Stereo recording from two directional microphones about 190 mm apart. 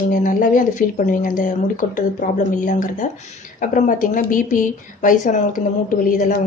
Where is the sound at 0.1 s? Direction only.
45° left (ahead or behind).